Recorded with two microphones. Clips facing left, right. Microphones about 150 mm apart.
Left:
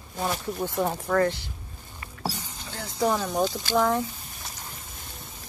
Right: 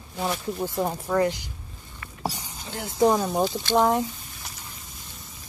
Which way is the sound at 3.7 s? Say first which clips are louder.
Right 3 dB; 20° right (ahead or behind).